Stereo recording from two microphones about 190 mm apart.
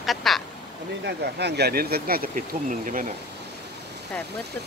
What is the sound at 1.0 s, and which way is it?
Speech, 60° right (ahead or behind).